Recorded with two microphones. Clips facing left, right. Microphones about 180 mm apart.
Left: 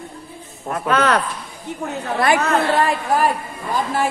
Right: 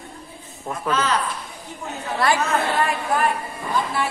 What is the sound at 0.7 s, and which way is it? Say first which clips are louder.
Speech: left 5 dB; 60° left (ahead or behind).